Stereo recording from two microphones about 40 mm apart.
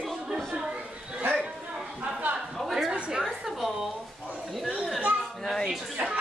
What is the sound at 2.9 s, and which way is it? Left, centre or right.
Speech, right.